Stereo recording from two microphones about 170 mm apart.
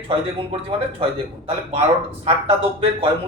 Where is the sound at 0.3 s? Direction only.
35° right (ahead or behind).